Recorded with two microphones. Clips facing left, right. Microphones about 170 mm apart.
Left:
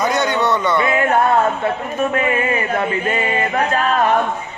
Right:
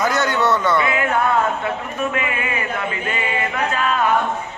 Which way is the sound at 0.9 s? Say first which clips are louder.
Left 4 dB; 50° left (ahead or behind).